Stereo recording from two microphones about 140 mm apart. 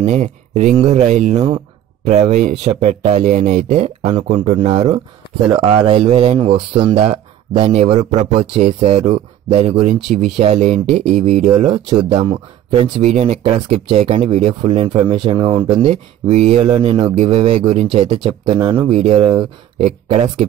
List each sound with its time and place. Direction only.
0.0 s speech: 55° right (ahead or behind)
3.8 s speech: 45° right (ahead or behind)
12.1 s speech: 35° right (ahead or behind)
13.0 s speech: 50° right (ahead or behind)